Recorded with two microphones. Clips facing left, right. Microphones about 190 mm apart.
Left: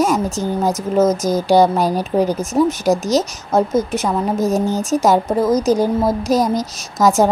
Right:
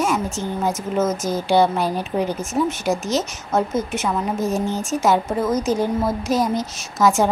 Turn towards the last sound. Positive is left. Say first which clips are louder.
# left 3 dB
turn(degrees=40)  # may be behind; listen again after turning